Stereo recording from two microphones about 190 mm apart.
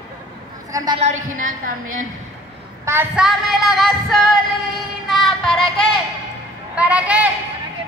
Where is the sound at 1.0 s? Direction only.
40° right (ahead or behind).